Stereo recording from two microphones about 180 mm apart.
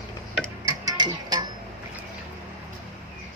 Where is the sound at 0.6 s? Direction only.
20° right (ahead or behind).